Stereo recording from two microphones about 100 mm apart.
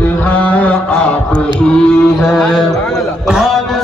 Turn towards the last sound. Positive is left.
turn(degrees=-5)  # may be behind; listen again after turning